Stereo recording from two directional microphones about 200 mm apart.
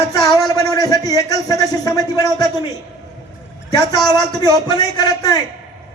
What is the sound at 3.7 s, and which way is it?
A man's voice, 20° left (ahead or behind).